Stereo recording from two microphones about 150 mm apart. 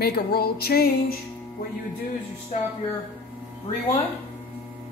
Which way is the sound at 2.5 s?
60° left (ahead or behind).